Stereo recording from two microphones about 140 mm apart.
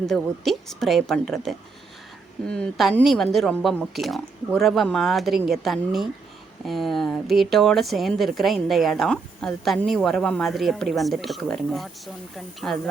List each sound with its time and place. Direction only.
0.0 s speech: centre (ahead or behind)